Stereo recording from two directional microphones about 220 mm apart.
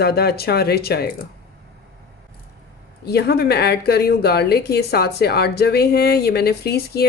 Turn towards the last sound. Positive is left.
turn(degrees=45)  # may be behind; listen again after turning